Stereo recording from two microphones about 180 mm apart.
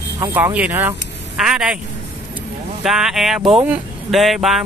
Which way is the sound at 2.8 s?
Centre (ahead or behind).